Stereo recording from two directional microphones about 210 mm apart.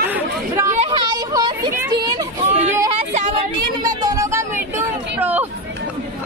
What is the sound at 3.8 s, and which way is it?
Music, 15° right (ahead or behind).